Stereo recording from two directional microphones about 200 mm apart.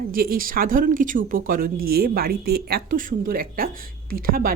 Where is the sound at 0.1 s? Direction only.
45° right (ahead or behind).